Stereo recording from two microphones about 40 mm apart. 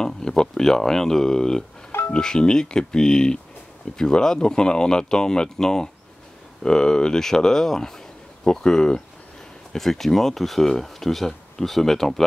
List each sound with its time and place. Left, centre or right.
0.0 s speech: centre